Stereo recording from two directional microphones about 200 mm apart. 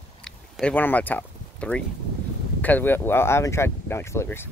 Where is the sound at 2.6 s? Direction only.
10° left (ahead or behind).